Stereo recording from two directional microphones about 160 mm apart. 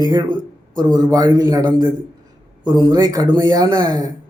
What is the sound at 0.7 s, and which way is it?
Speech, 25° right (ahead or behind).